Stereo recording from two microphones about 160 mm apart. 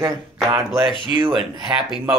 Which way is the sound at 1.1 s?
30° right (ahead or behind).